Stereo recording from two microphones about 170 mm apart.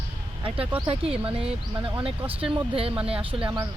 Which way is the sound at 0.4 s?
30° right (ahead or behind).